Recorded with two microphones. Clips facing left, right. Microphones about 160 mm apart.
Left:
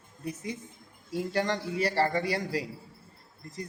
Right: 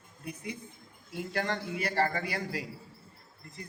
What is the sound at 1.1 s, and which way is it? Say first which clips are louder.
A man's voice: left 4 dB; 35° left (ahead or behind).